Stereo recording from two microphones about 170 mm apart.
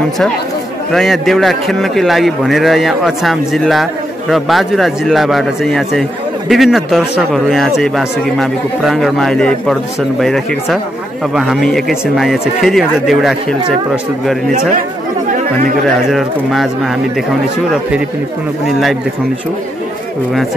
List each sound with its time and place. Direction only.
0.9 s a man's voice: centre (ahead or behind)
16.1 s a man's voice: centre (ahead or behind)